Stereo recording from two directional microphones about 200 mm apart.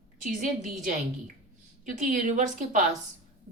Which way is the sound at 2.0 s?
40° right (ahead or behind).